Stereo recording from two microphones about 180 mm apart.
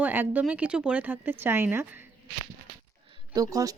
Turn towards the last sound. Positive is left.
turn(degrees=-20)  # may be behind; listen again after turning